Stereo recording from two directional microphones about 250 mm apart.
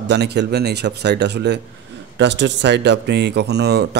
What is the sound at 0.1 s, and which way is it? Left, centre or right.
Speech, right.